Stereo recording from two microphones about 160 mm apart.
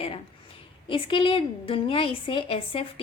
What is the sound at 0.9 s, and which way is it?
A woman's voice, 35° left (ahead or behind).